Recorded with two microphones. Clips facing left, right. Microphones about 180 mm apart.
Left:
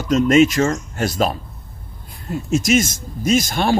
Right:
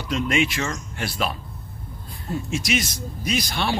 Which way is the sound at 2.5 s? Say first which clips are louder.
Left 10 dB; 45° left (ahead or behind).